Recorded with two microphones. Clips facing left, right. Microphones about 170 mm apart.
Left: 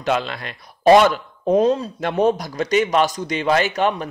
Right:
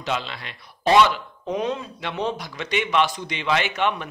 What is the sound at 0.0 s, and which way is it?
Speech, 50° left (ahead or behind).